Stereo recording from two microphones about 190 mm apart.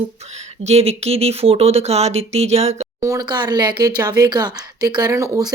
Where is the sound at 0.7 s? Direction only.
35° right (ahead or behind).